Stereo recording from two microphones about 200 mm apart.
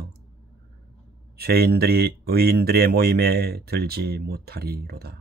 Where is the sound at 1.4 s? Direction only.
50° right (ahead or behind).